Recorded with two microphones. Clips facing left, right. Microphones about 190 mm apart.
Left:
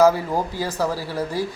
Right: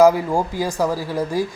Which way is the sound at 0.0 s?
15° right (ahead or behind).